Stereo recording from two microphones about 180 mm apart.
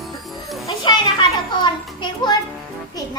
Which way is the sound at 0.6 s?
25° left (ahead or behind).